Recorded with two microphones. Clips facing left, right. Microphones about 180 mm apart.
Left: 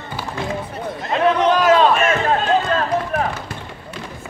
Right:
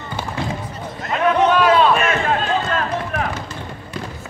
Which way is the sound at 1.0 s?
35° left (ahead or behind).